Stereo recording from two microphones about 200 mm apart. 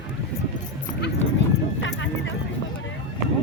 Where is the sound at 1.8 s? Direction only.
65° left (ahead or behind).